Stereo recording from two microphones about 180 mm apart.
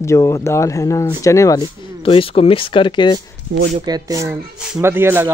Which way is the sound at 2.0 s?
30° left (ahead or behind).